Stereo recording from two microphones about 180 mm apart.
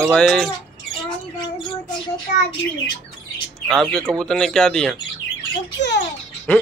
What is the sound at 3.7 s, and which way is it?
Speech, centre (ahead or behind).